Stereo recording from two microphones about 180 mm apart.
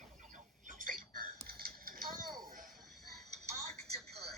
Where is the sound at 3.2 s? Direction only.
40° right (ahead or behind).